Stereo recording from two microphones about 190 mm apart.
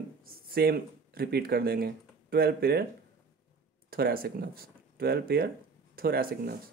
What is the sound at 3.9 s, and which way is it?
Speech, 50° right (ahead or behind).